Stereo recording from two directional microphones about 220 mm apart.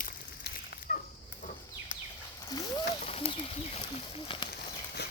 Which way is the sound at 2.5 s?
20° left (ahead or behind).